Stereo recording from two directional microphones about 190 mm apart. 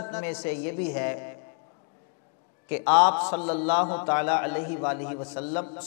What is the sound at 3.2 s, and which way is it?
A man's voice, 25° left (ahead or behind).